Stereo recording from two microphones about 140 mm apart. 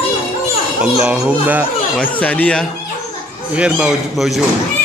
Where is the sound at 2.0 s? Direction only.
10° left (ahead or behind).